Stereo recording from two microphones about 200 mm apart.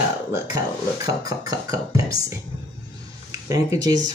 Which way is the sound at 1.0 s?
20° right (ahead or behind).